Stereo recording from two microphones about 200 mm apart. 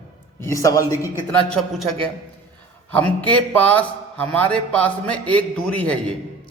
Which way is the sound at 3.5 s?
10° left (ahead or behind).